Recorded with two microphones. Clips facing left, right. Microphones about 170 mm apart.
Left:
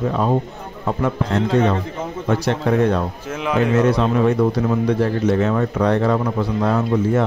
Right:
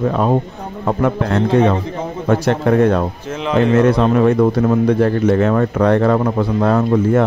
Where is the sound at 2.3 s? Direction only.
55° right (ahead or behind).